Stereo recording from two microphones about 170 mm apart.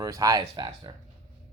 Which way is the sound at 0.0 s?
20° right (ahead or behind).